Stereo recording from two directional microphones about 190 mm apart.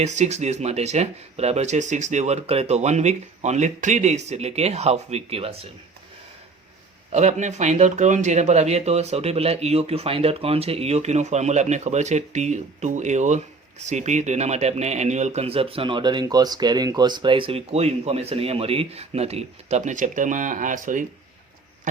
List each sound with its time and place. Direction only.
0.0 s speech: 35° right (ahead or behind)
7.1 s speech: 35° right (ahead or behind)